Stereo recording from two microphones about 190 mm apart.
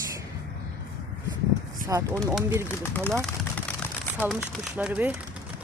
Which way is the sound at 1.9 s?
15° right (ahead or behind).